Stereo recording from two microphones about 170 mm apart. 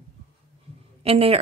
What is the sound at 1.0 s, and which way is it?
Speech, 35° right (ahead or behind).